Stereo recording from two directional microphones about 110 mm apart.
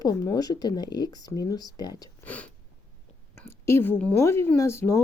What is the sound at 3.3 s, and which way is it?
Speech, 20° left (ahead or behind).